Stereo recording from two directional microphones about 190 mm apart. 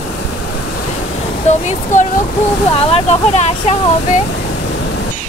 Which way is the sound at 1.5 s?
40° left (ahead or behind).